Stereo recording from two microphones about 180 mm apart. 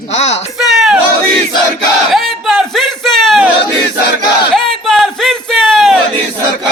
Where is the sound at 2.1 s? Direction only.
Centre (ahead or behind).